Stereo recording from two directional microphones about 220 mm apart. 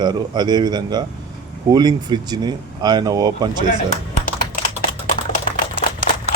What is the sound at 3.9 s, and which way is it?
Typing, 30° left (ahead or behind).